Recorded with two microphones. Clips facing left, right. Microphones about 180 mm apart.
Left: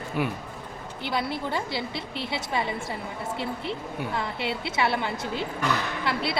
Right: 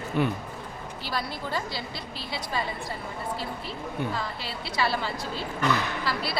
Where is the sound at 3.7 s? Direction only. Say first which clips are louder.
Even; 25° left (ahead or behind).